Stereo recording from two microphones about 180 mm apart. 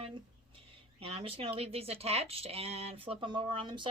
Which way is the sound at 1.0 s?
30° right (ahead or behind).